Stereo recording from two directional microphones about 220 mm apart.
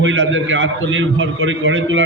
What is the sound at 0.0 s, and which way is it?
A man's voice, 60° right (ahead or behind).